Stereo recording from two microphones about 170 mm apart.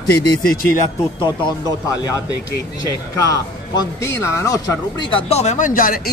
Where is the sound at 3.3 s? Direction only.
20° left (ahead or behind).